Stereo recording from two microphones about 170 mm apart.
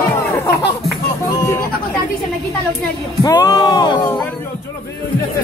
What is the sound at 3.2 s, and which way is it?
Speech, 20° left (ahead or behind).